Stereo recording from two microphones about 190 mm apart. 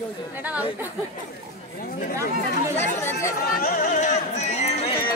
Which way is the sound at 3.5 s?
45° left (ahead or behind).